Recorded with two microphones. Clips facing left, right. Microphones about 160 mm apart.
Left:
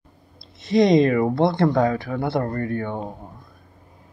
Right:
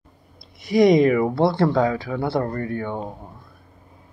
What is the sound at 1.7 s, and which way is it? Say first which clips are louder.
Speech: even; 50° left (ahead or behind).